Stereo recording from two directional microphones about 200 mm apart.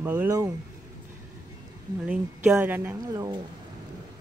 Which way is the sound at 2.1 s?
5° right (ahead or behind).